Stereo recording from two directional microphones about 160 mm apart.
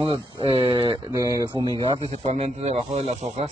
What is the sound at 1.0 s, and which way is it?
Speech, 20° right (ahead or behind).